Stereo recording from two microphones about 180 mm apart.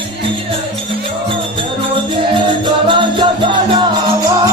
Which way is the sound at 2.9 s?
25° right (ahead or behind).